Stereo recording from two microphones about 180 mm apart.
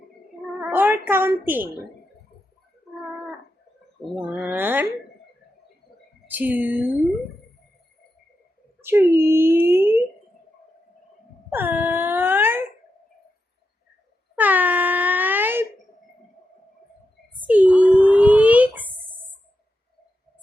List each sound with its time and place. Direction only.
0.6 s a sound: 10° right (ahead or behind)
4.4 s speech: 10° right (ahead or behind)
6.2 s music: 10° right (ahead or behind)
8.8 s speech: 15° right (ahead or behind)
11.5 s wail: 10° right (ahead or behind)
14.3 s wail: 10° right (ahead or behind)
17.4 s a sound: 10° right (ahead or behind)